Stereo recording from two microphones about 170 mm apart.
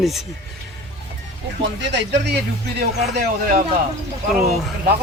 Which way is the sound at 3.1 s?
55° right (ahead or behind).